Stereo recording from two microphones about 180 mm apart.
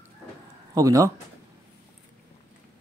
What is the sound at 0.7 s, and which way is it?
Speech, 20° right (ahead or behind).